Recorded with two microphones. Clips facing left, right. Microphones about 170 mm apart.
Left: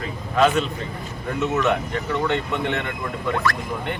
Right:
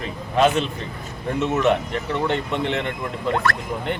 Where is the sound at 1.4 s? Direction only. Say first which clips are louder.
Right 2 dB; 25° right (ahead or behind).